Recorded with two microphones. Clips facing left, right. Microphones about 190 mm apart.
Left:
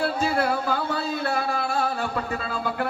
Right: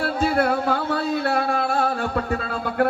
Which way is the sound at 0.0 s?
55° right (ahead or behind).